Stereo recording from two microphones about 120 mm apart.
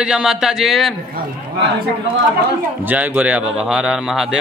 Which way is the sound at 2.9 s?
10° right (ahead or behind).